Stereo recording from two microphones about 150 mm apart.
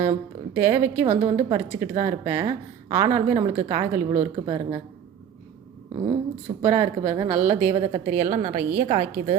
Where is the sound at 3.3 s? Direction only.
40° right (ahead or behind).